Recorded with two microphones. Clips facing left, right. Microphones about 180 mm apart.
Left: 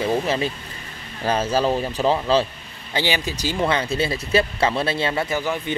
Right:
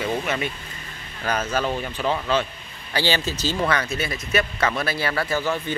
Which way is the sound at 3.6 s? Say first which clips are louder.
Left 4 dB; 25° left (ahead or behind).